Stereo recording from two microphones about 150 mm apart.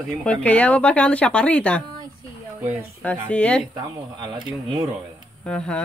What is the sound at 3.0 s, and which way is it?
Speech, 10° left (ahead or behind).